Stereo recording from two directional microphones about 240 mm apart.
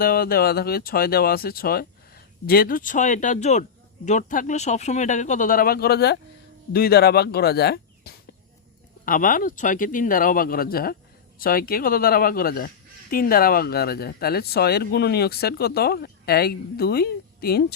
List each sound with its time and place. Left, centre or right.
0.0 s speech: left